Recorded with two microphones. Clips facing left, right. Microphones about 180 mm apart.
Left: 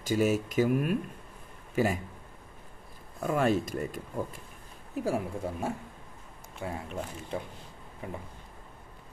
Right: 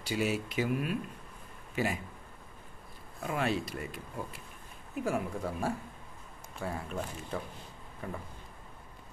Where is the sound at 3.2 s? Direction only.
45° left (ahead or behind).